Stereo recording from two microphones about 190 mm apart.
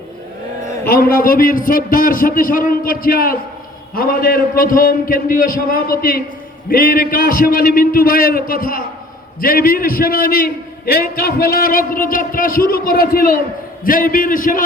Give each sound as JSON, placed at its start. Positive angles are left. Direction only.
{"t": 0.9, "sound": "a man's voice", "side_deg": 50}